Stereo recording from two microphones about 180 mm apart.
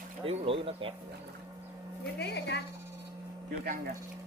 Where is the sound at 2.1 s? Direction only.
65° left (ahead or behind).